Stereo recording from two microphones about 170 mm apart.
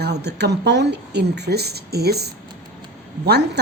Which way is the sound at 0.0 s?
75° right (ahead or behind).